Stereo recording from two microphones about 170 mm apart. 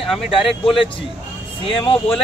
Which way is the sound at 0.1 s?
Centre (ahead or behind).